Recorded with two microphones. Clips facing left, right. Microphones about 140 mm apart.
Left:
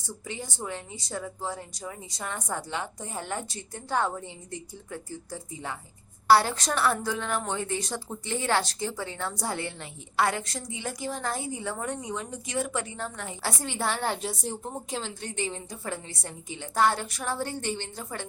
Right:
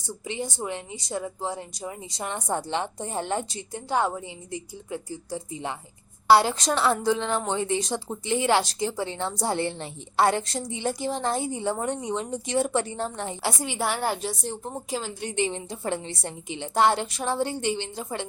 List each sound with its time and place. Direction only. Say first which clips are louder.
0.3 s a woman's voice: right 5 dB; 20° right (ahead or behind)
13.4 s a woman's voice: right 2 dB; 10° right (ahead or behind)